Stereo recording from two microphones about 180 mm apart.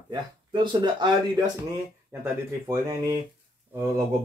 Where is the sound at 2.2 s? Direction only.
15° right (ahead or behind).